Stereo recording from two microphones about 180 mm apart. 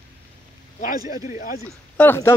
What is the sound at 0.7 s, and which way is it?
Speech, 50° left (ahead or behind).